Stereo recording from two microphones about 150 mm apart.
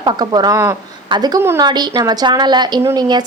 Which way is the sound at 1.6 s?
25° right (ahead or behind).